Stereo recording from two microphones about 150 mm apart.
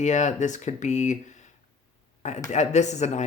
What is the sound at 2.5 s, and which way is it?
Speech, 50° left (ahead or behind).